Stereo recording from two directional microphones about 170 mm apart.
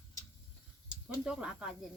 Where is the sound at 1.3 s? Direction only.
5° right (ahead or behind).